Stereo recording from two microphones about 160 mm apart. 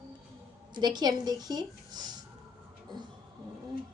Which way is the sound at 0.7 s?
25° right (ahead or behind).